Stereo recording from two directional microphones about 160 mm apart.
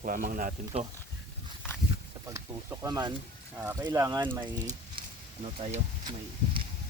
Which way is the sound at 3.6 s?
15° right (ahead or behind).